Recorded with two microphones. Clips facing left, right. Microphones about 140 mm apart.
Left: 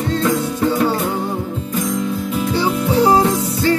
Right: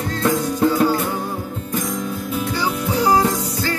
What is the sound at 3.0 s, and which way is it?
Music, 30° left (ahead or behind).